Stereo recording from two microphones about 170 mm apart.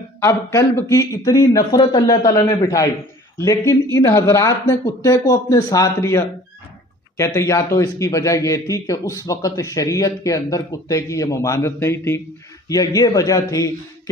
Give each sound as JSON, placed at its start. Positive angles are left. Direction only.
{"t": 0.2, "sound": "speech", "side_deg": 15}